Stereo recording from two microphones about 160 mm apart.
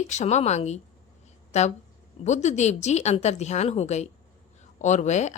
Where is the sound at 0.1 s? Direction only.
45° left (ahead or behind).